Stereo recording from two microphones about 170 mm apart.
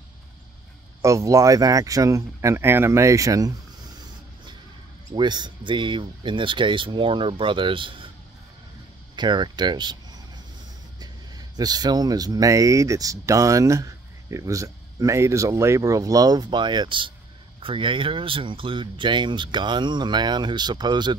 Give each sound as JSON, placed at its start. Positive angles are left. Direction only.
{"t": 1.0, "sound": "speech", "side_deg": -20}
{"t": 5.1, "sound": "speech", "side_deg": -25}
{"t": 9.1, "sound": "speech", "side_deg": -25}
{"t": 11.0, "sound": "speech", "side_deg": -25}